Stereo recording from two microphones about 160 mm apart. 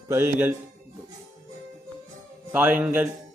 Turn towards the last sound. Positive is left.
turn(degrees=-10)  # may be behind; listen again after turning